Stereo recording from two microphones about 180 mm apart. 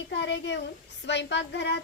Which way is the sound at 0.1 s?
80° left.